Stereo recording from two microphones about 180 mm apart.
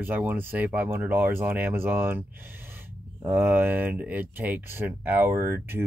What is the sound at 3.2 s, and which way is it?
Speech, 10° right (ahead or behind).